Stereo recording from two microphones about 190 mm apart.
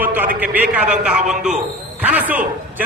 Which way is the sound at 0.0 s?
10° right (ahead or behind).